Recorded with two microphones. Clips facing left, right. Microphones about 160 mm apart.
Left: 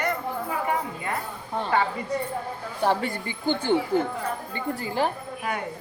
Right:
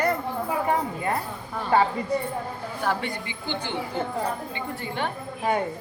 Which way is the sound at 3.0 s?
45° left (ahead or behind).